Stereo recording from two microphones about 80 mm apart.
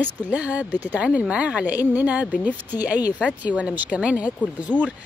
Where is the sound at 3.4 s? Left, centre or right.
Centre.